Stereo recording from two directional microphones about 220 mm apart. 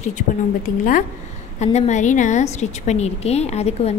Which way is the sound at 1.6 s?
30° left (ahead or behind).